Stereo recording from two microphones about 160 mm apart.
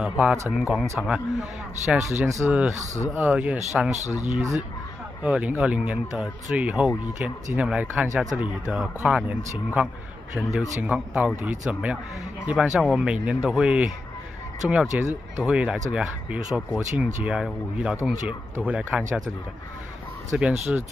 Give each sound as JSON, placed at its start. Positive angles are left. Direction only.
{"t": 0.0, "sound": "speech", "side_deg": -10}
{"t": 2.2, "sound": "speech", "side_deg": -20}
{"t": 2.7, "sound": "speech", "side_deg": -45}
{"t": 3.1, "sound": "speech", "side_deg": -10}
{"t": 3.9, "sound": "speech", "side_deg": -45}
{"t": 4.4, "sound": "speech", "side_deg": -15}
{"t": 20.3, "sound": "speech", "side_deg": -10}